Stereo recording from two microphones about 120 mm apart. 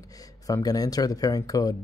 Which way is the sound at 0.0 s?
30° left (ahead or behind).